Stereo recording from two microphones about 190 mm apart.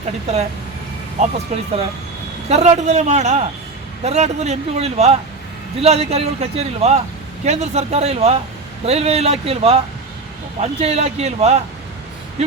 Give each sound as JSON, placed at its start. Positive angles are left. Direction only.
{"t": 0.3, "sound": "a man's voice", "side_deg": -35}
{"t": 2.5, "sound": "a man's voice", "side_deg": -35}